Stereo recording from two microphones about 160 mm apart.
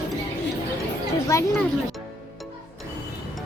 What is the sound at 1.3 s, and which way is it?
Speech, 20° left (ahead or behind).